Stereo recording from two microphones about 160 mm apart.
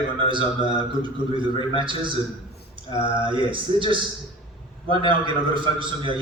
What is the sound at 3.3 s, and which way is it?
Speech, 30° right (ahead or behind).